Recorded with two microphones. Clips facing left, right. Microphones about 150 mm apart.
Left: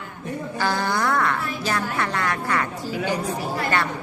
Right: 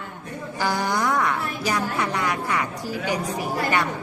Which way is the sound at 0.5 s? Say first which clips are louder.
Even; 15° right (ahead or behind).